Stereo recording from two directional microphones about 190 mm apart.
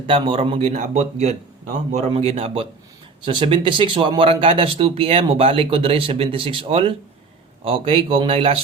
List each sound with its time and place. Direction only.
0.1 s a man's voice: 25° right (ahead or behind)